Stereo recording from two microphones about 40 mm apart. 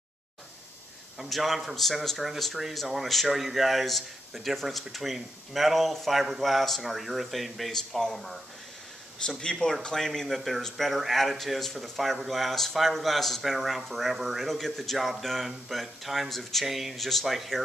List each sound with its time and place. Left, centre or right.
1.1 s speech: centre
9.4 s speech: centre